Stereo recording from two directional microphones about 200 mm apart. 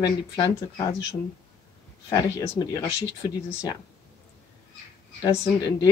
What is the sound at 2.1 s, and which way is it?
Speech, 20° left (ahead or behind).